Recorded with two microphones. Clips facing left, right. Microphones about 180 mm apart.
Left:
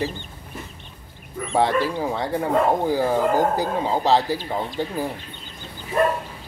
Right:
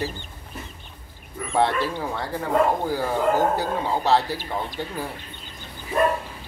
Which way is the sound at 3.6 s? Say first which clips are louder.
Left 2 dB; 15° left (ahead or behind).